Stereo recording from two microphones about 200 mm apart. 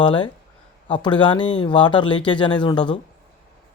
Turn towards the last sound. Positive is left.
turn(degrees=25)  # may be behind; listen again after turning